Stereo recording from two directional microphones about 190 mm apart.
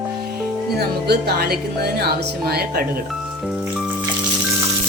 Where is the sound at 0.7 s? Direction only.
60° right (ahead or behind).